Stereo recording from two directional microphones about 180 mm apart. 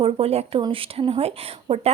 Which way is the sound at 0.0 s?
35° right (ahead or behind).